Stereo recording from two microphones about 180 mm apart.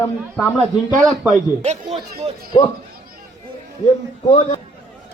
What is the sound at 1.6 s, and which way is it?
Speech, 40° right (ahead or behind).